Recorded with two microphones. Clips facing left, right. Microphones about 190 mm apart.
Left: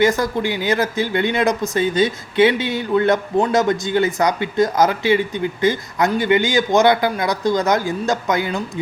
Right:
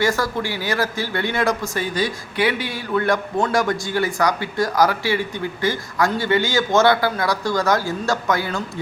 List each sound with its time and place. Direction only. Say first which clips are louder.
0.0 s speech: left 4 dB; 20° left (ahead or behind)